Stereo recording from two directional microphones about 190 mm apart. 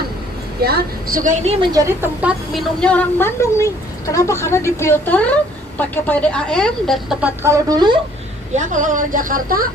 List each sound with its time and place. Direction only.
0.6 s speech: 55° right (ahead or behind)
1.6 s a woman's voice: 20° right (ahead or behind)
2.5 s a woman's voice: 5° left (ahead or behind); by 7.9 s 20° right (ahead or behind)
8.5 s speech: 40° right (ahead or behind)